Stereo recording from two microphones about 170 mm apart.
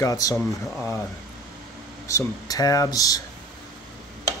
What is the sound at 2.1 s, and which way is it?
Speech, 20° left (ahead or behind).